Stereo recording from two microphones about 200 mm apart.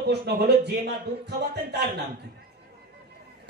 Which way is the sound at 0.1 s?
55° right (ahead or behind).